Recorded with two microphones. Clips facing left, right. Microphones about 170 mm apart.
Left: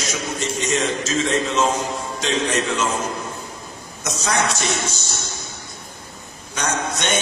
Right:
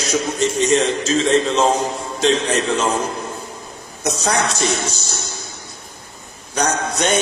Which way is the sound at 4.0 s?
35° right (ahead or behind).